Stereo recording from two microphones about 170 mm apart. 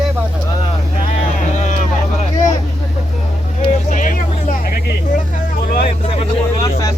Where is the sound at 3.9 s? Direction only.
50° left (ahead or behind).